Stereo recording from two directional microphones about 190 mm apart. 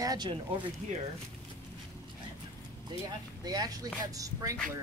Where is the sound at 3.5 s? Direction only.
20° right (ahead or behind).